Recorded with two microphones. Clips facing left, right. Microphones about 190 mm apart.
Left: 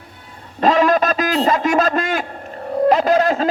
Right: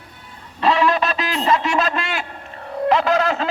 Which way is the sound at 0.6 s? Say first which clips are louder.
Left 3 dB; 45° left (ahead or behind).